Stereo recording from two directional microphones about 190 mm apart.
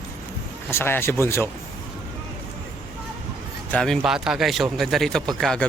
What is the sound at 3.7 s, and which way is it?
Speech, 5° left (ahead or behind).